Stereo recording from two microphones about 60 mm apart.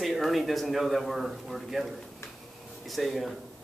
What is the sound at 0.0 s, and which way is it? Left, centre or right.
Speech, centre.